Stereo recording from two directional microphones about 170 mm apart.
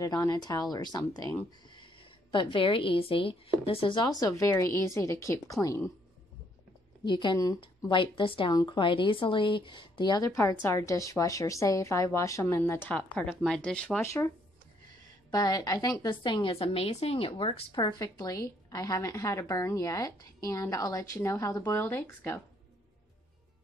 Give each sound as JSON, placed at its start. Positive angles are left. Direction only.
{"t": 0.0, "sound": "a woman's voice", "side_deg": 20}
{"t": 7.1, "sound": "a woman's voice", "side_deg": 25}
{"t": 14.0, "sound": "a woman's voice", "side_deg": 15}
{"t": 15.3, "sound": "a woman's voice", "side_deg": 20}